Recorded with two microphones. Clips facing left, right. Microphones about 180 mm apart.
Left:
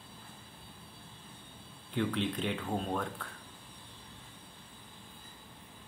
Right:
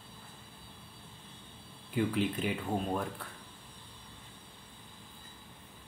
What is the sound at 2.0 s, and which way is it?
Speech, 5° right (ahead or behind).